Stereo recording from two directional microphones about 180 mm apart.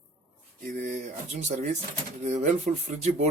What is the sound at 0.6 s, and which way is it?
Speech, 50° right (ahead or behind).